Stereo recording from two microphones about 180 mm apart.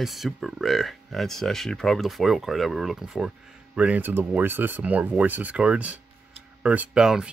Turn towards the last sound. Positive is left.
turn(degrees=-5)  # may be behind; listen again after turning